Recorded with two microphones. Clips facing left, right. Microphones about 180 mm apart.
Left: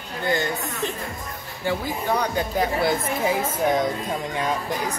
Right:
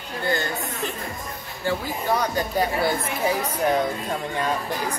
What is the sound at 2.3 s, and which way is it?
Speech, 20° left (ahead or behind).